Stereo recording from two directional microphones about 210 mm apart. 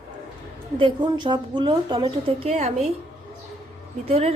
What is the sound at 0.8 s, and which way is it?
A woman's voice, 20° right (ahead or behind).